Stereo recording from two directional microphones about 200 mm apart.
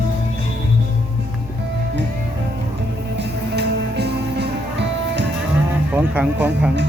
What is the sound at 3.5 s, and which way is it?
Music, 55° right (ahead or behind).